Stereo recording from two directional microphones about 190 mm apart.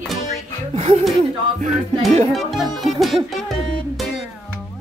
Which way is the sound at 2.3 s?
Centre (ahead or behind).